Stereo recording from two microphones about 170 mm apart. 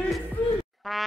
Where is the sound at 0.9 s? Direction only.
Centre (ahead or behind).